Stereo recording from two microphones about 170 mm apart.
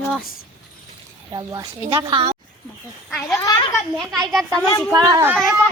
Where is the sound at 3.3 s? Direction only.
20° left (ahead or behind).